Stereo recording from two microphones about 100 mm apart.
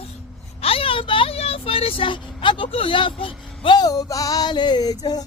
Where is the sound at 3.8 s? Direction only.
35° left (ahead or behind).